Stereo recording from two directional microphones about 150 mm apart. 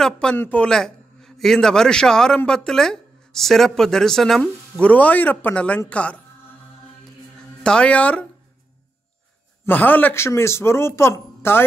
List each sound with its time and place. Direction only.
0.0 s a man's voice: 5° left (ahead or behind)
7.6 s speech: 5° left (ahead or behind)
9.7 s speech: 10° left (ahead or behind)